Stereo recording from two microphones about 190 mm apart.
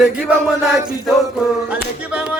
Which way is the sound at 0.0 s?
5° right (ahead or behind).